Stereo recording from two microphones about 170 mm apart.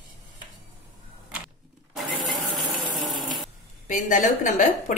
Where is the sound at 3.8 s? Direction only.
50° left (ahead or behind).